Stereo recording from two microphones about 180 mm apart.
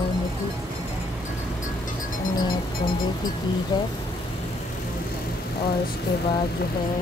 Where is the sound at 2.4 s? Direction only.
25° left (ahead or behind).